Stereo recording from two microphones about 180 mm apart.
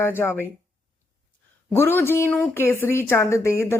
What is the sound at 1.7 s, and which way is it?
A woman's voice, 15° left (ahead or behind).